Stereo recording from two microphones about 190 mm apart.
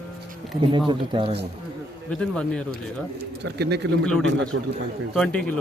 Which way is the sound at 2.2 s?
5° left (ahead or behind).